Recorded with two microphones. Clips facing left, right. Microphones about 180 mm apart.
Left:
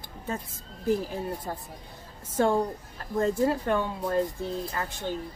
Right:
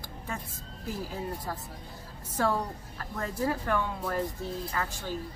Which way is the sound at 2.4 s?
25° left (ahead or behind).